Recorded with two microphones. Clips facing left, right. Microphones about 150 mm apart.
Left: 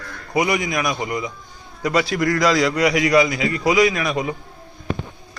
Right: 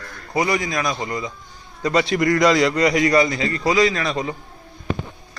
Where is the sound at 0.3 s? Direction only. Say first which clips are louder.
Left 1 dB; 15° left (ahead or behind).